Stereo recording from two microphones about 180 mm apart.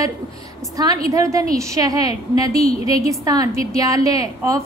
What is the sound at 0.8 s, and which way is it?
A woman's voice, 20° right (ahead or behind).